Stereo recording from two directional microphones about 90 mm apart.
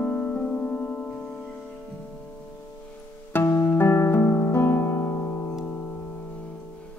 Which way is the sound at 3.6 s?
25° left (ahead or behind).